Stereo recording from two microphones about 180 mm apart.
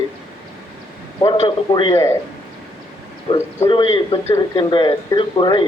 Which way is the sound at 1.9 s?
15° left (ahead or behind).